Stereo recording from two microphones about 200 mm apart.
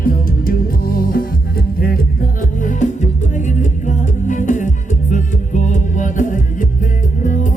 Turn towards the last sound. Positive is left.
turn(degrees=40)  # may be behind; listen again after turning